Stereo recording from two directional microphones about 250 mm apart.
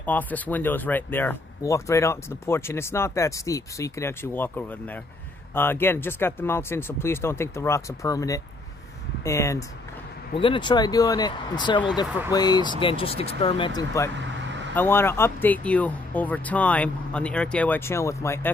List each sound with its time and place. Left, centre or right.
0.0 s speech: centre